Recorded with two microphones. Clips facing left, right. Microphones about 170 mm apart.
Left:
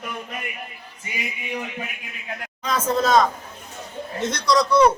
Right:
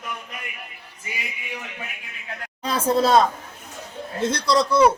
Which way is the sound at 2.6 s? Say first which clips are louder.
Right 2 dB; 35° right (ahead or behind).